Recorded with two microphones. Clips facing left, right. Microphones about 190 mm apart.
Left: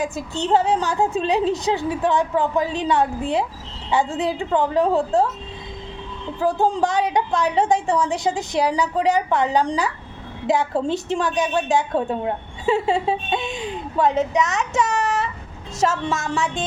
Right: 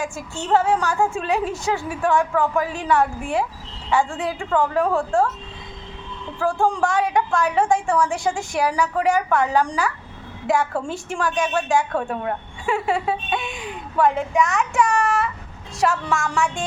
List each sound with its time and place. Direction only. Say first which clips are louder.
0.0 s a woman's voice: left 4 dB; 20° left (ahead or behind)
6.4 s a woman's voice: left 1 dB; 20° left (ahead or behind)